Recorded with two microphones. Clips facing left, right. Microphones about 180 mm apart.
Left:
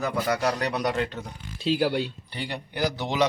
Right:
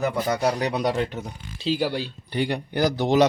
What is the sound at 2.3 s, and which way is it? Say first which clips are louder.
Speech: right 8 dB; 40° right (ahead or behind).